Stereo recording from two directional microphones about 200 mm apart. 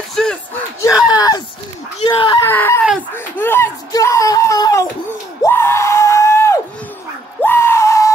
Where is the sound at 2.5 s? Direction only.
10° left (ahead or behind).